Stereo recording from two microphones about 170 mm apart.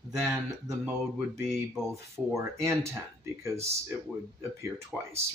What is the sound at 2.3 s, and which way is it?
Speech, 15° right (ahead or behind).